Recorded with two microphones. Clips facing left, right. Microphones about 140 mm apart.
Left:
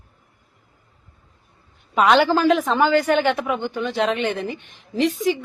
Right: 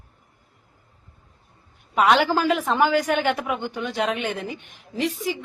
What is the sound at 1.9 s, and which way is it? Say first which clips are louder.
A woman's voice: left 2 dB; 5° right (ahead or behind).